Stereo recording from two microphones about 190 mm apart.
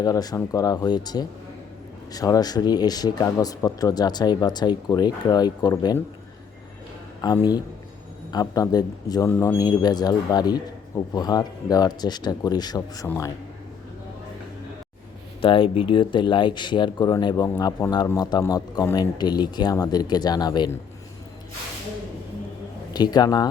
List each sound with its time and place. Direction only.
0.0 s speech: 20° left (ahead or behind)
7.2 s speech: 20° left (ahead or behind)
15.4 s speech: 30° left (ahead or behind)
22.9 s a man's voice: 20° left (ahead or behind)